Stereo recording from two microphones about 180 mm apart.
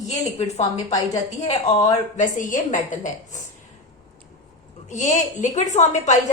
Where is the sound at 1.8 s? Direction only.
45° left (ahead or behind).